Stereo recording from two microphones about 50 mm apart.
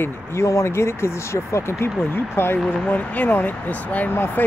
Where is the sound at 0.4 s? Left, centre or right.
Left.